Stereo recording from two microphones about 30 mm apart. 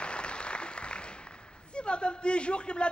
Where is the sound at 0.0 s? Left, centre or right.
Left.